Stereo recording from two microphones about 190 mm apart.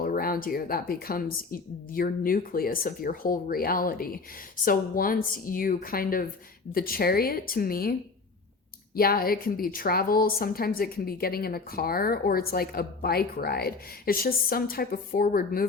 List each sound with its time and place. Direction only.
0.0 s a woman's voice: 50° left (ahead or behind)
9.0 s a woman's voice: 50° left (ahead or behind)